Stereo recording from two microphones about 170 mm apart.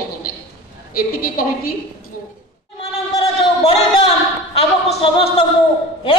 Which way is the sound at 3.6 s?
40° left (ahead or behind).